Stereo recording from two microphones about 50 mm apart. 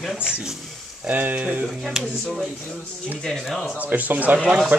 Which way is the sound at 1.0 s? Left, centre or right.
Right.